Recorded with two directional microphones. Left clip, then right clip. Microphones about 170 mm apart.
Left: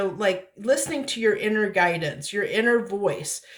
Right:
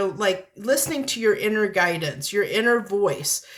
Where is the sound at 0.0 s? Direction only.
35° right (ahead or behind).